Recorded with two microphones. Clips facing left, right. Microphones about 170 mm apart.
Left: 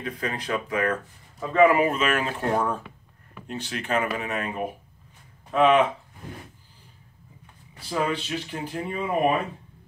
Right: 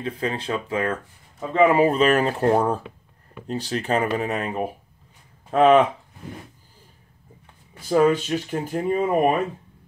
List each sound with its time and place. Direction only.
0.0 s speech: 30° right (ahead or behind); by 5.9 s 45° right (ahead or behind)
7.9 s speech: 45° right (ahead or behind)